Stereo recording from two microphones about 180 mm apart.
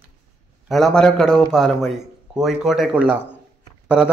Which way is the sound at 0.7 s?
Centre (ahead or behind).